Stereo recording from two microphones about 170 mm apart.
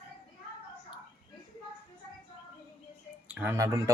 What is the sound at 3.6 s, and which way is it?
Speech, 20° right (ahead or behind).